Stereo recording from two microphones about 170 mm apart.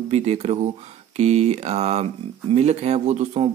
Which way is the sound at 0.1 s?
40° right (ahead or behind).